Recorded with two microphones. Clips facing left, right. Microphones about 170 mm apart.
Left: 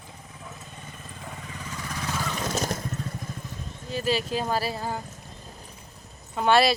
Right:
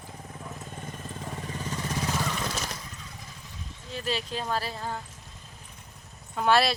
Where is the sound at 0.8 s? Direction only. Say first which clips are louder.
Right 4 dB; 45° right (ahead or behind); by 2.2 s 25° right (ahead or behind).